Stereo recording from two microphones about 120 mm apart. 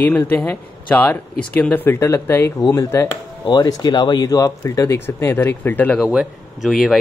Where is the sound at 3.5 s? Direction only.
35° left (ahead or behind); by 6.0 s 15° left (ahead or behind).